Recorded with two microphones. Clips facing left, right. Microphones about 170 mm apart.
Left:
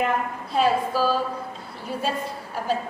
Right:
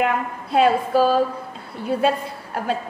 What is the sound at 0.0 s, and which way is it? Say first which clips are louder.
A woman's voice: right 2 dB; 60° right (ahead or behind).